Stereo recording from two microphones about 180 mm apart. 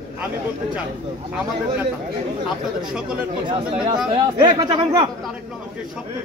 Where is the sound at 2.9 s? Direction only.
5° right (ahead or behind).